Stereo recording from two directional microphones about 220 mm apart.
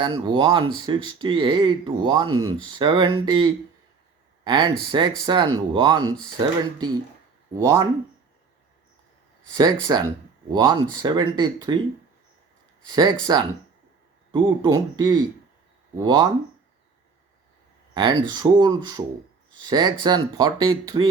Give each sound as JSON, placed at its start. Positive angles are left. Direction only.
{"t": 0.0, "sound": "speech", "side_deg": -20}
{"t": 7.6, "sound": "speech", "side_deg": -20}
{"t": 9.6, "sound": "speech", "side_deg": -20}
{"t": 13.3, "sound": "speech", "side_deg": -15}
{"t": 17.9, "sound": "speech", "side_deg": -20}